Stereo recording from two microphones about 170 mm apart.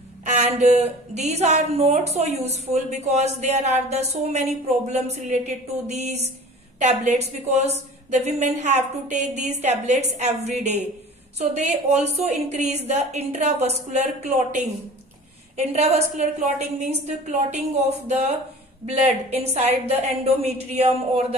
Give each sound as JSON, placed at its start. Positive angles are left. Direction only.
{"t": 0.2, "sound": "a woman's voice", "side_deg": -45}